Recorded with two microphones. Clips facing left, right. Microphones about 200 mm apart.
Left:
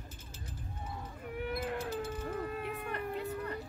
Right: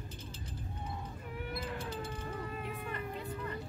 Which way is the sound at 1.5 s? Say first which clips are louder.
Left 4 dB; 50° left (ahead or behind).